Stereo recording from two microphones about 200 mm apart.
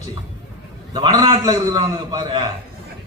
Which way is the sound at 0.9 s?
20° right (ahead or behind).